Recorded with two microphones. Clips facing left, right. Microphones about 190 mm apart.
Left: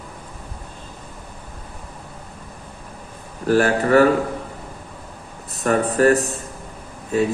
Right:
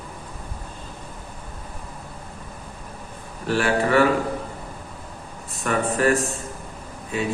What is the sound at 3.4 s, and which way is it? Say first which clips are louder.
Speech: left 4 dB; 40° left (ahead or behind).